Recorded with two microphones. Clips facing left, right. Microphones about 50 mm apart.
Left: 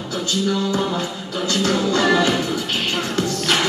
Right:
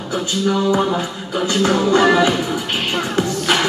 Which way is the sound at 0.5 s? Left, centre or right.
Right.